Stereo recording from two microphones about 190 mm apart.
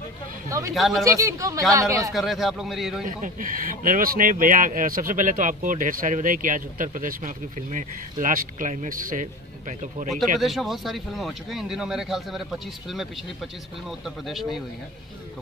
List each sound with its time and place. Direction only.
0.7 s speech: centre (ahead or behind)
1.0 s speech: 15° right (ahead or behind)
2.1 s speech: centre (ahead or behind)
3.1 s speech: 45° right (ahead or behind)
10.4 s speech: centre (ahead or behind)